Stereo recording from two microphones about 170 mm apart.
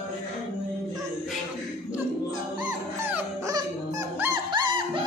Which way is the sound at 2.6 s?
10° right (ahead or behind).